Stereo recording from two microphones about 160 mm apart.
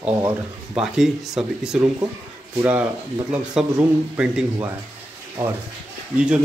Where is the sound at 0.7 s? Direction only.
5° right (ahead or behind).